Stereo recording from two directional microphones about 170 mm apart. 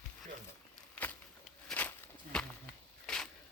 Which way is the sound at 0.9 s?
10° left (ahead or behind).